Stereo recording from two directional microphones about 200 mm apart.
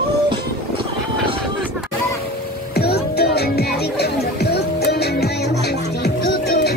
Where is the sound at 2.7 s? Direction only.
55° left (ahead or behind).